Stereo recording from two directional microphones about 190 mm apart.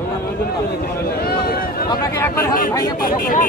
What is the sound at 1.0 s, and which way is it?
Speech, 50° left (ahead or behind).